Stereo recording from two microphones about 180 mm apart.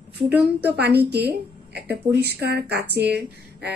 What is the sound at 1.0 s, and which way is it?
A woman's voice, 65° right (ahead or behind).